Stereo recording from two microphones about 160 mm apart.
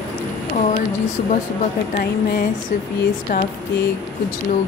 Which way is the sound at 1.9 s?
60° left (ahead or behind).